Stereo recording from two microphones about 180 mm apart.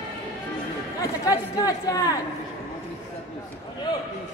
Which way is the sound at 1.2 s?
20° left (ahead or behind).